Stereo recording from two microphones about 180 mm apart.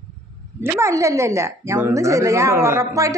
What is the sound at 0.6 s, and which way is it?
A woman's voice, 15° right (ahead or behind).